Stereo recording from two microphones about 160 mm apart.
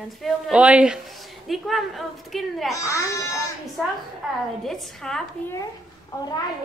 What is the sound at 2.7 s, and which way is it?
Speech, 20° left (ahead or behind).